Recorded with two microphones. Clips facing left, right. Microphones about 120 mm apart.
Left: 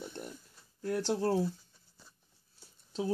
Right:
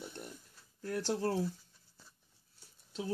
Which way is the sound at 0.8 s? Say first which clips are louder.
Left 3 dB; 30° left (ahead or behind).